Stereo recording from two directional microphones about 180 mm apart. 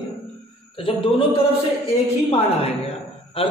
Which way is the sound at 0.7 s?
30° left (ahead or behind).